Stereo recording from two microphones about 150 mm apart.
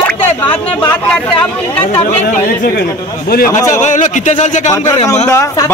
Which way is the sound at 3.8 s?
55° left (ahead or behind).